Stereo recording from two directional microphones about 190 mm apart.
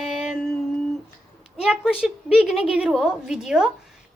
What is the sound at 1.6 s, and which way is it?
Speech, 5° right (ahead or behind).